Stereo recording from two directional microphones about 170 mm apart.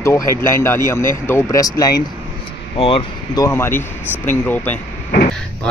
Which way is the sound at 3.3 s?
15° left (ahead or behind).